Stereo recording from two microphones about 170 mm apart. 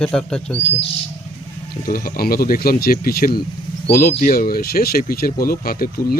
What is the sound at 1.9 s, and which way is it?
Speech, 60° left (ahead or behind).